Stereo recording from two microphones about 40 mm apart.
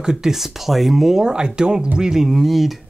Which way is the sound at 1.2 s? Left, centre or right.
Centre.